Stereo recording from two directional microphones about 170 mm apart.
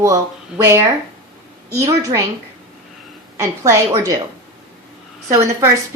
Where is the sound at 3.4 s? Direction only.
15° right (ahead or behind).